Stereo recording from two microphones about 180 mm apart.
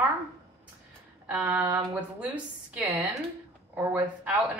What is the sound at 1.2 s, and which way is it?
A woman's voice, 10° right (ahead or behind).